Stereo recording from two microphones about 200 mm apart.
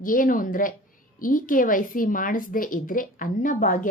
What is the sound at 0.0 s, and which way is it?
A woman's voice, 45° left (ahead or behind).